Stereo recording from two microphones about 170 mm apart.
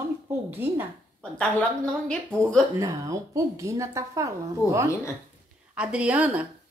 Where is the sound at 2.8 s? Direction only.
20° right (ahead or behind).